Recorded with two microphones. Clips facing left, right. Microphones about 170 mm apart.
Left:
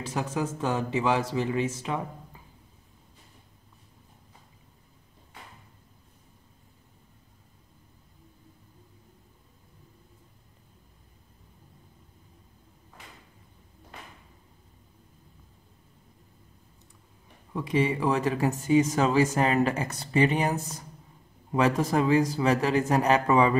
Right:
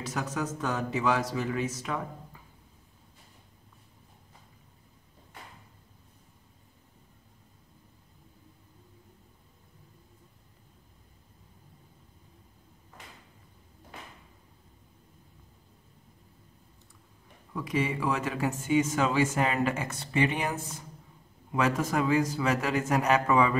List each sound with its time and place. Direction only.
0.0 s speech: 30° left (ahead or behind)
17.5 s speech: 25° left (ahead or behind)